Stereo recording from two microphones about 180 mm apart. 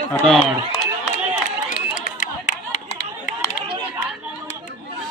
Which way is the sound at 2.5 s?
40° left (ahead or behind).